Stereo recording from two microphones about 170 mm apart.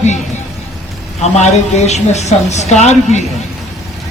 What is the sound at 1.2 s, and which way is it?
A woman's voice, 40° left (ahead or behind).